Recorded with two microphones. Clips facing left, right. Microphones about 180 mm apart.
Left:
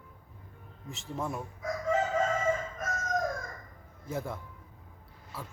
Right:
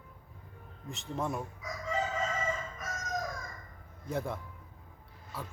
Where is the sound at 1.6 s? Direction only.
50° left (ahead or behind).